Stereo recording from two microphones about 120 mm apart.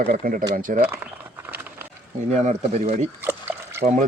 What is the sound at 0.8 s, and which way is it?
Speech, 15° right (ahead or behind).